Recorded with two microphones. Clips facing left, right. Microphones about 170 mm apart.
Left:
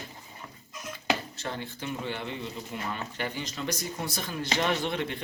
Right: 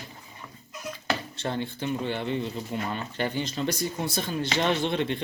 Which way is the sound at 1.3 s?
30° right (ahead or behind).